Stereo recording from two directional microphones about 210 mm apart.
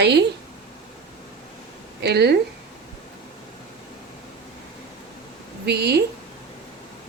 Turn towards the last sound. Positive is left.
turn(degrees=-50)  # may be behind; listen again after turning